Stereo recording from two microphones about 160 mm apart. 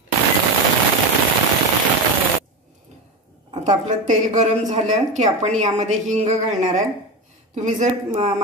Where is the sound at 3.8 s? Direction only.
50° right (ahead or behind).